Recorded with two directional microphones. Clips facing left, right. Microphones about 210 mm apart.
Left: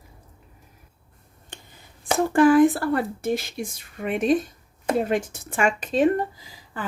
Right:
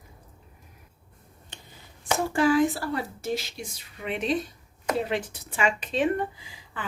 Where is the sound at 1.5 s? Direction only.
50° left (ahead or behind).